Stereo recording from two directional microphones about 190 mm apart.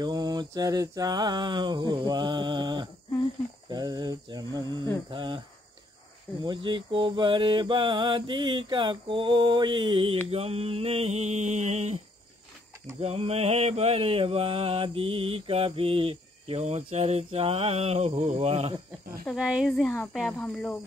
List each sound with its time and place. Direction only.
0.0 s mantra: 20° right (ahead or behind)
6.4 s mantra: 25° right (ahead or behind)
13.0 s mantra: 30° right (ahead or behind)
19.2 s speech: 5° right (ahead or behind)